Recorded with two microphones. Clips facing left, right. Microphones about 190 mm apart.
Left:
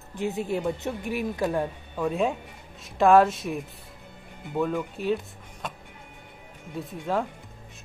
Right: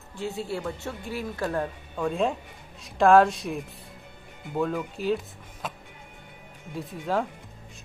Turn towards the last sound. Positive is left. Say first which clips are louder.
# even
turn(degrees=0)  # may be behind; listen again after turning